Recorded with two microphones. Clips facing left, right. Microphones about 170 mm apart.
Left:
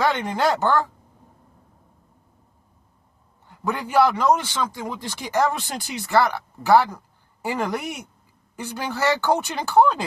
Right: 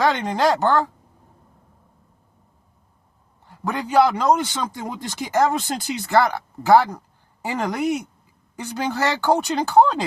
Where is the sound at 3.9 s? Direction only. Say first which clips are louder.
Right 1 dB; 15° right (ahead or behind).